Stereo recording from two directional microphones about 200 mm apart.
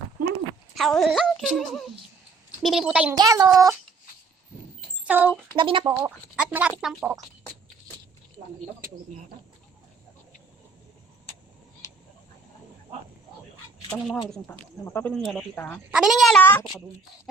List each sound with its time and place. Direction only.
0.8 s speech: centre (ahead or behind)
3.2 s speech: 20° right (ahead or behind)
5.0 s speech: 5° right (ahead or behind)
5.5 s speech: 25° right (ahead or behind)
6.0 s speech: 5° right (ahead or behind)
14.1 s speech: 5° left (ahead or behind)
15.9 s speech: centre (ahead or behind)